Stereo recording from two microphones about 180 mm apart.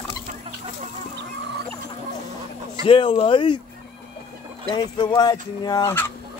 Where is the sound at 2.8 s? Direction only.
30° left (ahead or behind).